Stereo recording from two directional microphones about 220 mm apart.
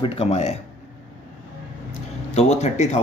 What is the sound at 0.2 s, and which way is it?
Speech, 30° left (ahead or behind).